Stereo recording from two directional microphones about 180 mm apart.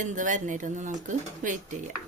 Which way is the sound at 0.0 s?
45° right (ahead or behind).